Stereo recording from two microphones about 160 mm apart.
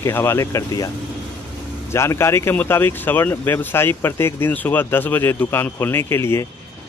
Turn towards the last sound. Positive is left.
turn(degrees=15)  # may be behind; listen again after turning